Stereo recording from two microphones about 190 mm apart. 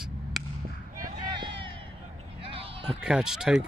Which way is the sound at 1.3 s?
25° right (ahead or behind).